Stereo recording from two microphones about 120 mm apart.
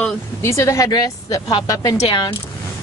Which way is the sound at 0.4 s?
25° left (ahead or behind).